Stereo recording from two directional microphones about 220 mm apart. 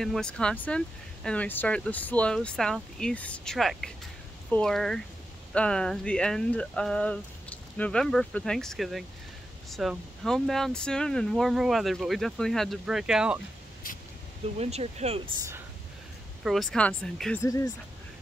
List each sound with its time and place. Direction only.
0.0 s speech: centre (ahead or behind)
13.9 s a sound: 40° left (ahead or behind)
14.6 s speech: 30° right (ahead or behind)
16.4 s speech: centre (ahead or behind)